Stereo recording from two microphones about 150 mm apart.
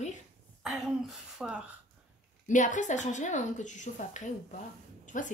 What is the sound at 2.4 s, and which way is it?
A woman's voice, 55° left (ahead or behind).